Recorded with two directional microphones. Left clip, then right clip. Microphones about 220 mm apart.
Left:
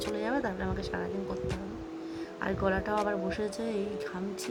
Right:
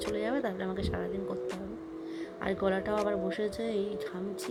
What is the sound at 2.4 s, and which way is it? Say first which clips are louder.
Speech: even; 10° right (ahead or behind).